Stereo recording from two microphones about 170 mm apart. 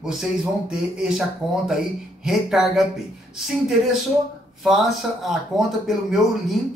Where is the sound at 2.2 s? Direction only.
Centre (ahead or behind).